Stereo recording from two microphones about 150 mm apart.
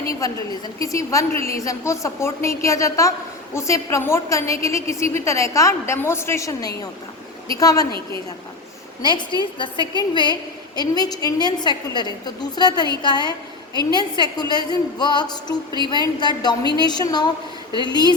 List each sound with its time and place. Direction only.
0.2 s a woman's voice: 20° left (ahead or behind)
9.0 s a woman's voice: 30° left (ahead or behind)